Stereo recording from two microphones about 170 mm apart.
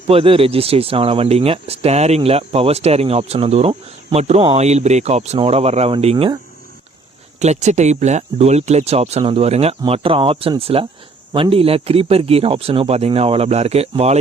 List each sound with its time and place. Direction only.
0.1 s speech: 35° right (ahead or behind)
7.3 s speech: 40° right (ahead or behind)